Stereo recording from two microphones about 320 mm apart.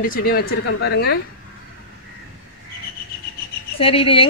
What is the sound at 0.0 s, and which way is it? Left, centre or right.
Speech, left.